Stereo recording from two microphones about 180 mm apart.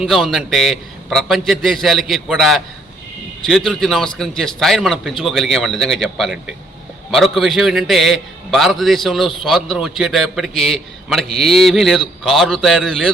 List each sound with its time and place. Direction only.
0.0 s a man's voice: centre (ahead or behind)